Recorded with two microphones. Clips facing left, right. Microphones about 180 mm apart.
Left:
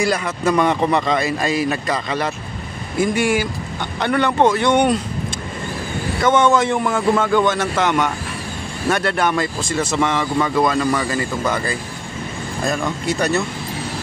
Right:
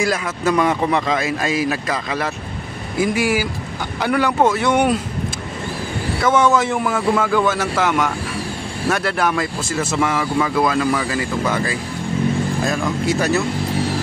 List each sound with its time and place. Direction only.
0.0 s speech: centre (ahead or behind)
6.2 s speech: centre (ahead or behind)